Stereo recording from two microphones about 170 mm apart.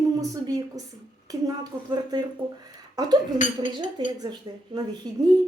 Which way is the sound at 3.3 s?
50° left (ahead or behind).